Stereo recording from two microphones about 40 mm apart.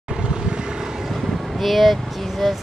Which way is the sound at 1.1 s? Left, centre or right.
Centre.